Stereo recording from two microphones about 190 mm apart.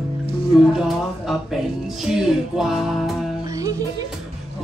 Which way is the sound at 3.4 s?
15° right (ahead or behind).